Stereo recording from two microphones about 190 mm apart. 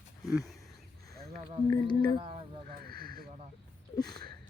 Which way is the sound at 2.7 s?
55° right (ahead or behind).